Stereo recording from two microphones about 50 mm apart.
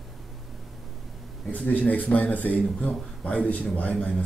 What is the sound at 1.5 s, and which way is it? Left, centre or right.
A man's voice, left.